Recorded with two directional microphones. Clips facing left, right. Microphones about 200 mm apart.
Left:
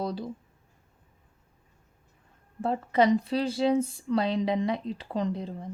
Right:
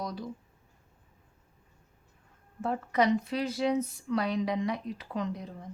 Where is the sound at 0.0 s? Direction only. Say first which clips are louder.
Left 5 dB; 30° left (ahead or behind).